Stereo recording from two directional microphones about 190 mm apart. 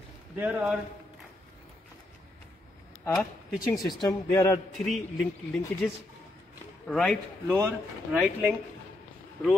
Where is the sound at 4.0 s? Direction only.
15° left (ahead or behind).